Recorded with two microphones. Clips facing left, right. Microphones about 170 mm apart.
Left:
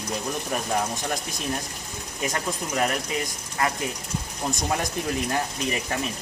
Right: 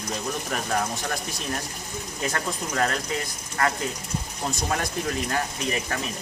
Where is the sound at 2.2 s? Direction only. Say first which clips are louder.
Left 1 dB; 15° left (ahead or behind).